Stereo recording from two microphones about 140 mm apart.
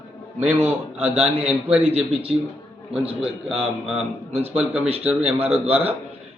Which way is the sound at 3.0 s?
5° right (ahead or behind).